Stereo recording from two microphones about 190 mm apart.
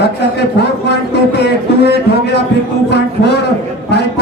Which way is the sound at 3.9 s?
65° left (ahead or behind).